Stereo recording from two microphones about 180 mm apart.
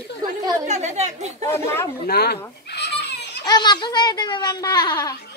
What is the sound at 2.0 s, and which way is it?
Speech, 65° left (ahead or behind).